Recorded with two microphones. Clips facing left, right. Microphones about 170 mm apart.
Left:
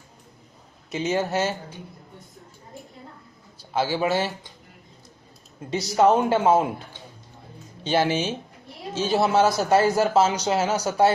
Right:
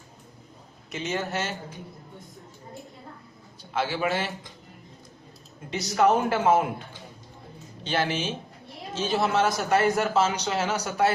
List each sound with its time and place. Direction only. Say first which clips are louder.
0.9 s speech: left 6 dB; 30° left (ahead or behind)
3.7 s speech: left 4 dB; 30° left (ahead or behind)
5.9 s a man's voice: left 3 dB; 25° left (ahead or behind)
7.9 s a man's voice: left 5 dB; 30° left (ahead or behind)